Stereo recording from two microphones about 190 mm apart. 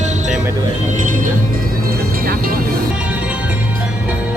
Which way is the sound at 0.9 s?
40° right (ahead or behind).